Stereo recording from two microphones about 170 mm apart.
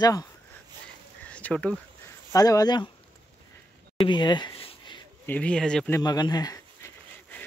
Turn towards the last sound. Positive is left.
turn(degrees=20)  # may be behind; listen again after turning